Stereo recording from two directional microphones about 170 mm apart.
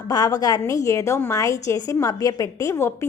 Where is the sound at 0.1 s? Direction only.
20° left (ahead or behind).